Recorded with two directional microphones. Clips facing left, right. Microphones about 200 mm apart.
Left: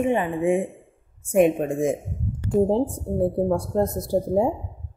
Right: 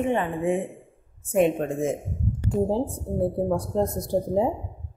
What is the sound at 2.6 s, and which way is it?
Speech, 25° left (ahead or behind).